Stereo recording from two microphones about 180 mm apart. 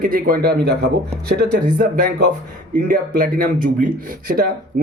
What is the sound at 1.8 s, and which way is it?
Speech, 50° right (ahead or behind).